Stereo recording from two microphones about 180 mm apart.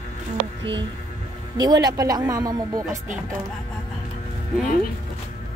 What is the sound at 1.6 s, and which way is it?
Speech, 20° right (ahead or behind).